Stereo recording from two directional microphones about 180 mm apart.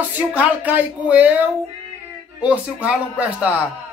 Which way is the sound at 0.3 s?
10° right (ahead or behind).